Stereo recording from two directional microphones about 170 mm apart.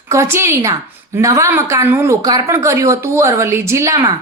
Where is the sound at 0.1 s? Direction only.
15° right (ahead or behind).